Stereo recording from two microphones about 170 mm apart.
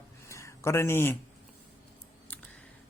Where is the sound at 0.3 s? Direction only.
15° left (ahead or behind).